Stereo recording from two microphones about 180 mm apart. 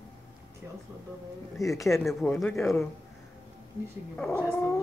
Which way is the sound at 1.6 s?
15° left (ahead or behind).